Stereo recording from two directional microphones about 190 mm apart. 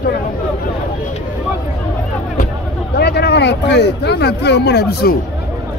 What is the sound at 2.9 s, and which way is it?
Speech, 60° left (ahead or behind).